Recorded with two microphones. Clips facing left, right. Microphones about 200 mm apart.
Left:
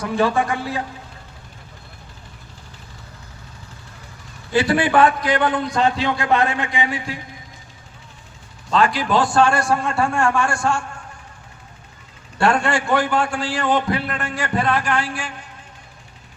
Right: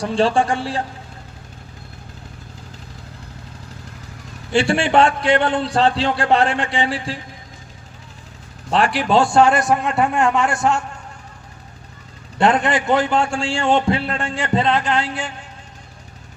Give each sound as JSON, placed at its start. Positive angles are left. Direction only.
{"t": 0.0, "sound": "a man's voice", "side_deg": -30}
{"t": 4.5, "sound": "a man's voice", "side_deg": -25}
{"t": 8.7, "sound": "a man's voice", "side_deg": -30}
{"t": 12.4, "sound": "a man's voice", "side_deg": -20}